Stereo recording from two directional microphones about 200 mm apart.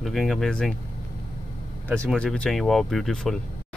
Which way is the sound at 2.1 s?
5° left (ahead or behind).